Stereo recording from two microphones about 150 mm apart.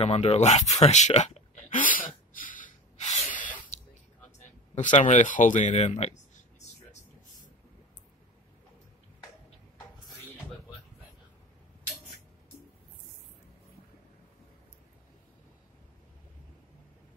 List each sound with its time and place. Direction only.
0.0 s a sound: 40° left (ahead or behind)
3.7 s spray: 45° left (ahead or behind)
4.7 s speech: 55° left (ahead or behind)